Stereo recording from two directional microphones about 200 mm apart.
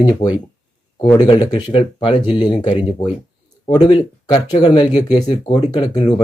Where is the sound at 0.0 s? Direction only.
20° left (ahead or behind).